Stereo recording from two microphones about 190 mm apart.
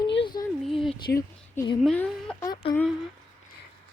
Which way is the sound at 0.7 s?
Centre (ahead or behind).